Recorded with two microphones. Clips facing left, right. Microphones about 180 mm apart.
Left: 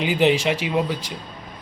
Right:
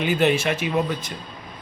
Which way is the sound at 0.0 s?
15° left (ahead or behind).